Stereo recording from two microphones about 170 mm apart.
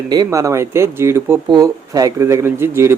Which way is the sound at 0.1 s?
20° right (ahead or behind).